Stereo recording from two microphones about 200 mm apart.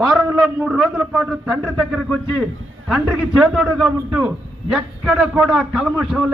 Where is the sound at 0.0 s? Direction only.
5° right (ahead or behind).